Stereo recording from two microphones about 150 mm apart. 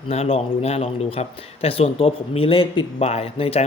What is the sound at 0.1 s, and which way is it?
A man's voice, 40° left (ahead or behind).